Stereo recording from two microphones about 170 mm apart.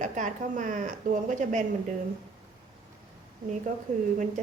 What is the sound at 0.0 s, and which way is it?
A woman's voice, 50° right (ahead or behind).